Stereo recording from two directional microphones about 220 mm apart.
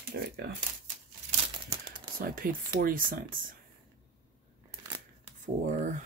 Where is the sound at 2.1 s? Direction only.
40° right (ahead or behind).